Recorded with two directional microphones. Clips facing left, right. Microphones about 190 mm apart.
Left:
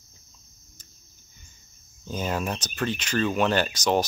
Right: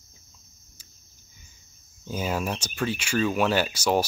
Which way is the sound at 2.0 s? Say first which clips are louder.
Even; 10° right (ahead or behind).